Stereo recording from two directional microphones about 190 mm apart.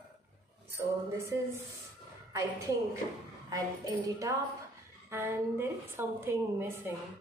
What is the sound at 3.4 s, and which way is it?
A woman's voice, 20° right (ahead or behind).